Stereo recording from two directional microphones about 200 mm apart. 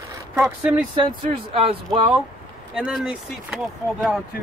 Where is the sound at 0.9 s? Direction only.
25° right (ahead or behind).